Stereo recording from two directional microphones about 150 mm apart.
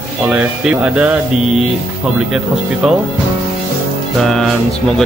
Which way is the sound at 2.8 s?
5° right (ahead or behind).